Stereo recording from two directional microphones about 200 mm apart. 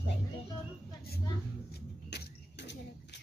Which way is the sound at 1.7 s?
55° left (ahead or behind).